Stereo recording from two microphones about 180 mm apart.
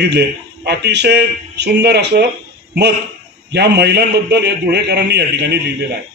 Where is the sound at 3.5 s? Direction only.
70° right (ahead or behind).